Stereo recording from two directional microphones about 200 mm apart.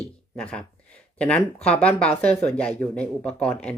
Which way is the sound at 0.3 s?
5° left (ahead or behind).